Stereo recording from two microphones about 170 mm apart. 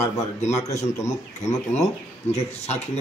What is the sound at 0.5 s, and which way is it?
Speech, 20° left (ahead or behind).